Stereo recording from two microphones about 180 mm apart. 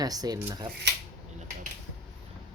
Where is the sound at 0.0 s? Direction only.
20° right (ahead or behind).